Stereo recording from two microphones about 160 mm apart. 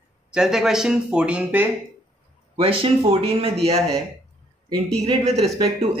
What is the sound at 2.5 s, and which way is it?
Speech, 35° right (ahead or behind).